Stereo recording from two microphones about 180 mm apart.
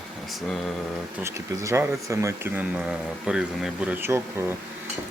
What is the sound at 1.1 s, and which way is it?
Speech, 15° right (ahead or behind).